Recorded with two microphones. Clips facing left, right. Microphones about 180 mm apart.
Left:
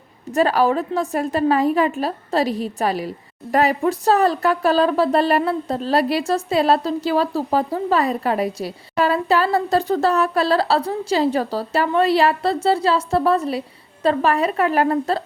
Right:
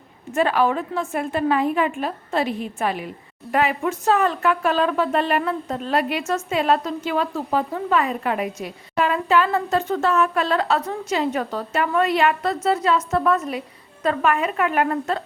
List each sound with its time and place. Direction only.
0.3 s a woman's voice: 35° left (ahead or behind)